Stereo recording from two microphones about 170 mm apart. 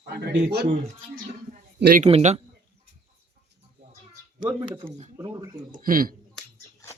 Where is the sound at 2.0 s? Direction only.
40° right (ahead or behind).